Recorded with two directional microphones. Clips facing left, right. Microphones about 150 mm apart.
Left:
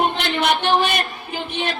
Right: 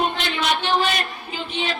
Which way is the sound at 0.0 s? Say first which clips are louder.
Left 3 dB; 55° left (ahead or behind).